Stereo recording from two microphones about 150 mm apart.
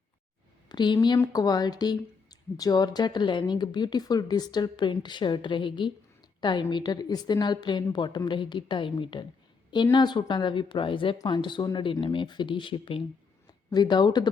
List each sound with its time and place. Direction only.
0.7 s a woman's voice: 30° left (ahead or behind)